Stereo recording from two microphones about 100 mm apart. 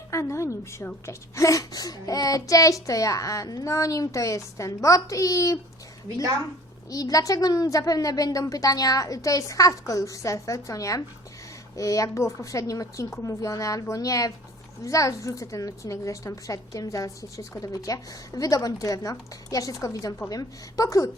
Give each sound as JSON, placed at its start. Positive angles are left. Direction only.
{"t": 0.1, "sound": "a woman's voice", "side_deg": 30}
{"t": 6.9, "sound": "a woman's voice", "side_deg": 35}